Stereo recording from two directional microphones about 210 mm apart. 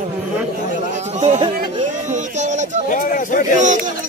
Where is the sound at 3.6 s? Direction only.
35° right (ahead or behind).